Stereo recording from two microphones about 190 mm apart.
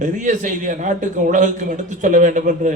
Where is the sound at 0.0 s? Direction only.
40° right (ahead or behind).